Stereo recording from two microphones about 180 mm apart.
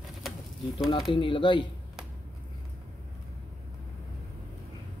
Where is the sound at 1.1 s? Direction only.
30° left (ahead or behind).